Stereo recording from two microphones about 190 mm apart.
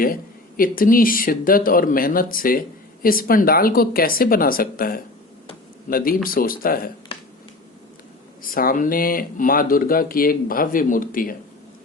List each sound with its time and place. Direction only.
0.0 s speech: 50° left (ahead or behind)
6.2 s speech: 50° left (ahead or behind)
8.4 s speech: 50° left (ahead or behind)